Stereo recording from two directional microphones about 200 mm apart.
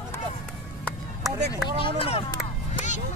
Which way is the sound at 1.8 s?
25° left (ahead or behind).